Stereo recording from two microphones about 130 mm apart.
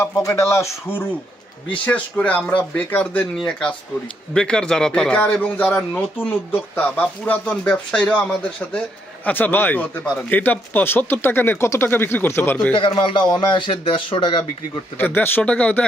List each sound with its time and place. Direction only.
0.0 s a man's voice: 20° left (ahead or behind)
5.7 s speech: centre (ahead or behind)
6.5 s a man's voice: 10° left (ahead or behind)
12.7 s speech: 40° left (ahead or behind)
14.9 s a man's voice: 15° left (ahead or behind)